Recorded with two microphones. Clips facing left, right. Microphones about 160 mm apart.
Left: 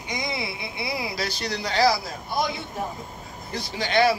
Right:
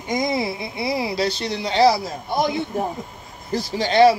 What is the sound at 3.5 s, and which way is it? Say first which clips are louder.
Speech: right 6 dB; 35° right (ahead or behind).